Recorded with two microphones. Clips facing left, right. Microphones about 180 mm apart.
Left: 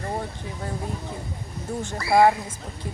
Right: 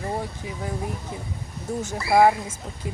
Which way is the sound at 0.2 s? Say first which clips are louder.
Right 1 dB; 5° right (ahead or behind).